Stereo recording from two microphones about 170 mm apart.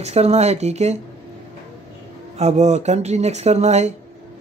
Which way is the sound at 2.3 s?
40° right (ahead or behind).